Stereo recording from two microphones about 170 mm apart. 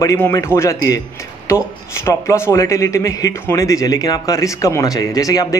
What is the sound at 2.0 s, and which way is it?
Speech, 15° left (ahead or behind).